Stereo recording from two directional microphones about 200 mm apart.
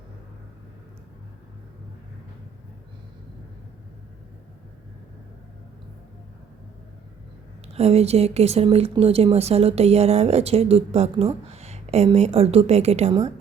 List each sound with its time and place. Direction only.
7.7 s speech: 30° right (ahead or behind)